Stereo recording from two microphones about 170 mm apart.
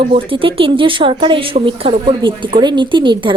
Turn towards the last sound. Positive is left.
turn(degrees=-30)  # may be behind; listen again after turning